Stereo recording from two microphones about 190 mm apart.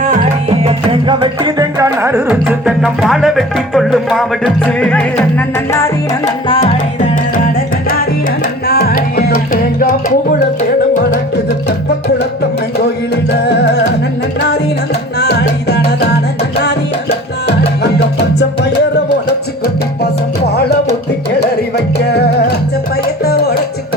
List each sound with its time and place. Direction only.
0.5 s music: 30° right (ahead or behind); by 5.0 s 5° left (ahead or behind)
5.7 s music: 15° left (ahead or behind)
8.6 s music: 55° left (ahead or behind)
15.2 s music: 60° left (ahead or behind)
18.3 s music: 65° left (ahead or behind)
21.9 s music: 60° left (ahead or behind)